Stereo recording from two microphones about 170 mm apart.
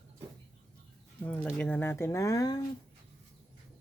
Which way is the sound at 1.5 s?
10° left (ahead or behind).